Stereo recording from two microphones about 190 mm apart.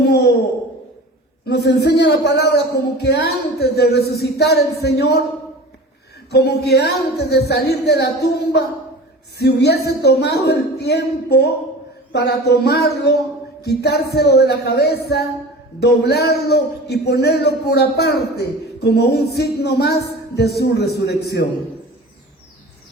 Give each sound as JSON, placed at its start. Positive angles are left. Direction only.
{"t": 0.0, "sound": "a sound", "side_deg": 60}
{"t": 1.5, "sound": "speech", "side_deg": 60}
{"t": 6.3, "sound": "speech", "side_deg": 60}